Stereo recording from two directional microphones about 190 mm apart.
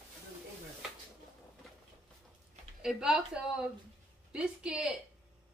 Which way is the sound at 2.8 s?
5° right (ahead or behind).